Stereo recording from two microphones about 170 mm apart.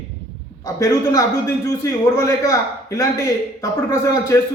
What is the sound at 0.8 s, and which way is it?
A man's voice, 20° left (ahead or behind).